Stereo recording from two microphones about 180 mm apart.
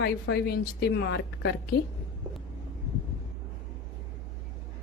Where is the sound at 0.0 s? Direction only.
65° left (ahead or behind).